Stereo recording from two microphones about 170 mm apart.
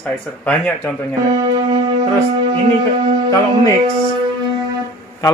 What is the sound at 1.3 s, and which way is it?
Music, 20° right (ahead or behind).